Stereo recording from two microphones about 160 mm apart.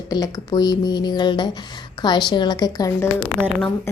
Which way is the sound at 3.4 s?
15° right (ahead or behind).